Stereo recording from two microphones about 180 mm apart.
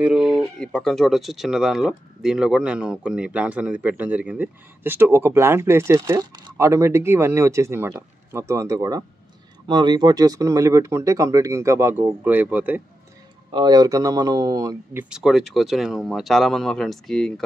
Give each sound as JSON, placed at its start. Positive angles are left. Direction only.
{"t": 0.0, "sound": "speech", "side_deg": -5}
{"t": 13.5, "sound": "speech", "side_deg": -25}
{"t": 15.0, "sound": "speech", "side_deg": -5}